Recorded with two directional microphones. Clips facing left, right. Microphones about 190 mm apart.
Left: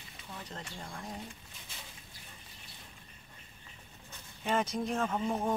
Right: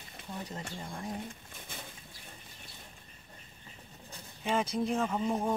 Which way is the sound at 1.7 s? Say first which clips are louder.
Right 6 dB; 55° right (ahead or behind).